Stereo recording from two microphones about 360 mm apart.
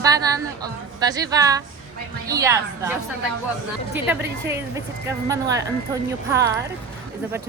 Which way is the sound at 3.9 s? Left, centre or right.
Centre.